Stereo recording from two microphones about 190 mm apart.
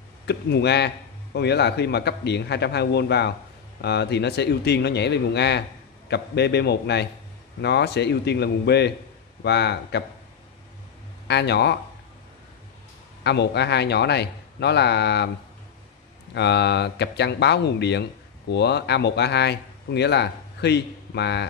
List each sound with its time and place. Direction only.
0.3 s a man's voice: 60° left (ahead or behind)
11.2 s a man's voice: 60° left (ahead or behind)
13.2 s a man's voice: 60° left (ahead or behind)
16.3 s a man's voice: 65° left (ahead or behind)